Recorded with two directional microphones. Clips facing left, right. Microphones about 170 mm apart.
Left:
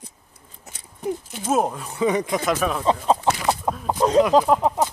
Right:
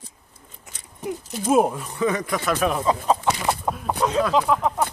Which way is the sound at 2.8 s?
30° left (ahead or behind).